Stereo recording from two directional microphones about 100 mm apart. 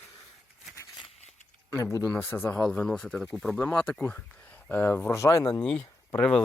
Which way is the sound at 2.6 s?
10° left (ahead or behind).